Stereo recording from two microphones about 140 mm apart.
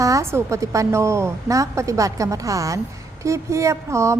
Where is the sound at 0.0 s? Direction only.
20° right (ahead or behind).